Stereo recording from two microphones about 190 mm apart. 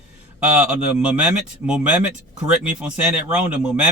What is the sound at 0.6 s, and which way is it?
Speech, 5° right (ahead or behind).